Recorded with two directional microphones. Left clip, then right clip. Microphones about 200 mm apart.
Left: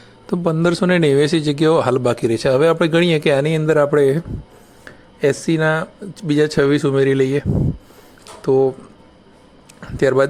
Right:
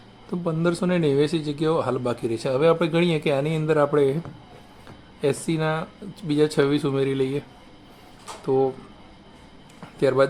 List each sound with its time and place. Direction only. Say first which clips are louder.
0.3 s a man's voice: left 7 dB; 40° left (ahead or behind)
5.2 s a man's voice: left 7 dB; 30° left (ahead or behind)
8.4 s a man's voice: left 7 dB; 35° left (ahead or behind)
9.8 s speech: left 5 dB; 35° left (ahead or behind)